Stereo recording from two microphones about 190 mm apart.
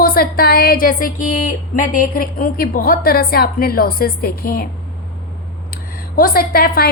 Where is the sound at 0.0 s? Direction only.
50° left (ahead or behind).